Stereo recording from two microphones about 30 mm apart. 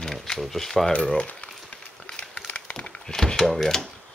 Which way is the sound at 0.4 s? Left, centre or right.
Centre.